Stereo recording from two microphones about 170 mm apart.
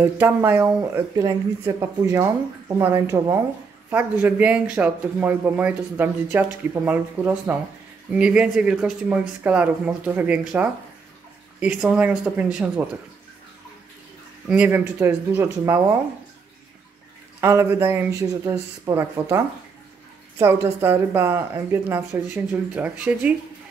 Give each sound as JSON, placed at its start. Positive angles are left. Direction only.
{"t": 0.0, "sound": "speech", "side_deg": -10}
{"t": 14.5, "sound": "speech", "side_deg": -10}
{"t": 17.4, "sound": "speech", "side_deg": -15}